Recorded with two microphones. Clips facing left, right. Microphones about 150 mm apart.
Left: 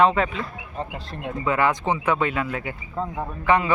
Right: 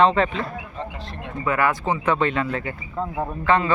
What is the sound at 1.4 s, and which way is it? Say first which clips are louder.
Speech: even; 20° left (ahead or behind).